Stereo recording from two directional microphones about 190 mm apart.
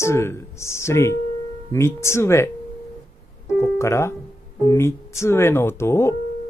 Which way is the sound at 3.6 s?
15° left (ahead or behind).